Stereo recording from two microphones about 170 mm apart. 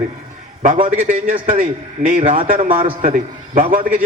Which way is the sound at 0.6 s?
50° right (ahead or behind).